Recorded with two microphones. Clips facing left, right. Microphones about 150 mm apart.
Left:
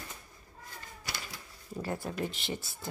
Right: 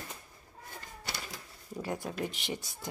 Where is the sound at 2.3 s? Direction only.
15° right (ahead or behind).